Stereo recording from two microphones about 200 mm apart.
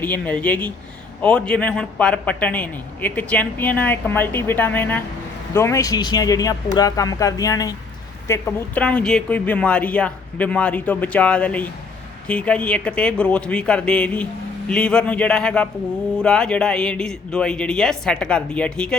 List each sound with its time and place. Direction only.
0.0 s a man's voice: 10° left (ahead or behind)